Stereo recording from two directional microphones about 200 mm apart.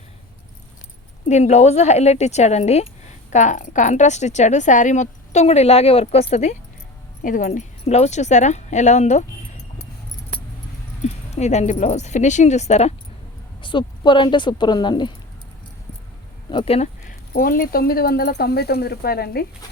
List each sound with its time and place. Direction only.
1.3 s speech: 35° left (ahead or behind)
11.0 s speech: 35° left (ahead or behind)
16.5 s speech: 25° left (ahead or behind); by 19.5 s 50° left (ahead or behind)